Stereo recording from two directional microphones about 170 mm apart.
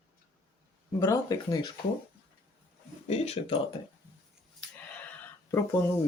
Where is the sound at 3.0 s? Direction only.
40° left (ahead or behind).